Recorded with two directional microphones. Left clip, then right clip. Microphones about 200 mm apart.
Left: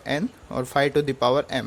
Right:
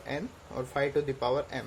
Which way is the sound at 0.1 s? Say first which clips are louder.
Left 10 dB; 45° left (ahead or behind).